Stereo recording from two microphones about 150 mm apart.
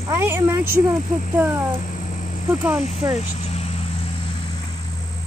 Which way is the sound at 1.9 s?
55° left (ahead or behind).